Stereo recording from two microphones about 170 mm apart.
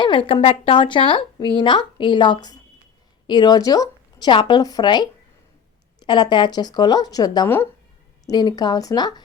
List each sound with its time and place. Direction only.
0.0 s a woman's voice: 30° left (ahead or behind); by 7.7 s 15° left (ahead or behind)
8.3 s a woman's voice: 25° left (ahead or behind)